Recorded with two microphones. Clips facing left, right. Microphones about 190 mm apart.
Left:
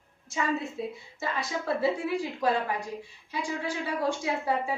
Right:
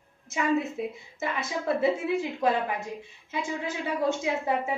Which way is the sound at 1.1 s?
20° right (ahead or behind).